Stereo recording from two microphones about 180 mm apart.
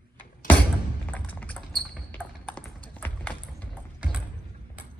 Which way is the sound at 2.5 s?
10° left (ahead or behind).